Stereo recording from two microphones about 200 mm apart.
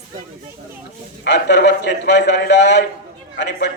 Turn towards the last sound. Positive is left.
turn(degrees=60)  # may be behind; listen again after turning